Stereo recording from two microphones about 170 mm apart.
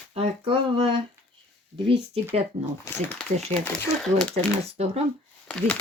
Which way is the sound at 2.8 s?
10° left (ahead or behind).